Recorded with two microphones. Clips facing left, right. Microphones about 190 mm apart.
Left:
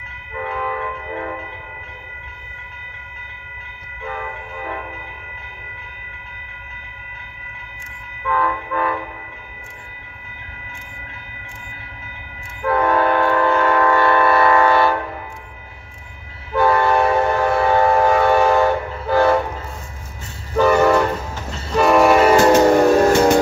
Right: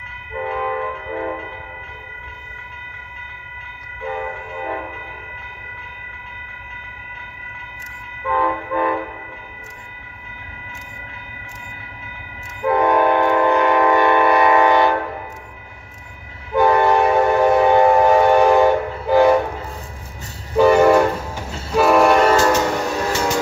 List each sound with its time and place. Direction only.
0.4 s train: 15° right (ahead or behind)
4.1 s train: 25° right (ahead or behind)
8.3 s train: 20° right (ahead or behind)
12.6 s train: 15° right (ahead or behind)
16.5 s train: 15° right (ahead or behind)
20.5 s train: 15° right (ahead or behind)
21.8 s train: centre (ahead or behind)
22.6 s train: 50° left (ahead or behind)